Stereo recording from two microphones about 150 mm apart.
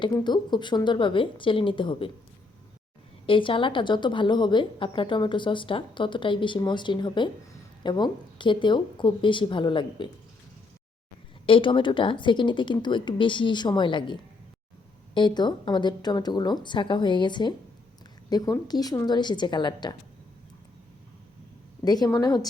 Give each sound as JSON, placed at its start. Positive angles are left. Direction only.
{"t": 0.0, "sound": "a woman's voice", "side_deg": 30}
{"t": 3.2, "sound": "a woman's voice", "side_deg": 35}
{"t": 11.4, "sound": "a woman's voice", "side_deg": 35}
{"t": 21.8, "sound": "a woman's voice", "side_deg": 25}